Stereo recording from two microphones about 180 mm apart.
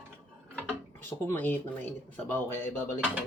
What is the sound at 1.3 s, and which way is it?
Speech, 10° left (ahead or behind).